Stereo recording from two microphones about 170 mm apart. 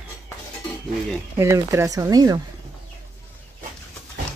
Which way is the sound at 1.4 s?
15° right (ahead or behind).